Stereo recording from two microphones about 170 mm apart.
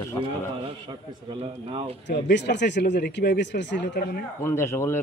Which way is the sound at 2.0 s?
85° left.